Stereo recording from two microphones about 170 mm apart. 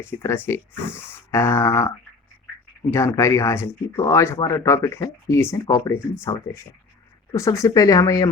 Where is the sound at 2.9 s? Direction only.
15° left (ahead or behind).